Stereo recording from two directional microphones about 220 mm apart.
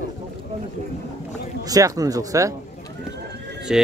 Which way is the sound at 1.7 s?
15° right (ahead or behind).